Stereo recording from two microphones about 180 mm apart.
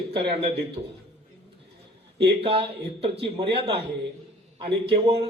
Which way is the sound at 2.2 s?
30° right (ahead or behind).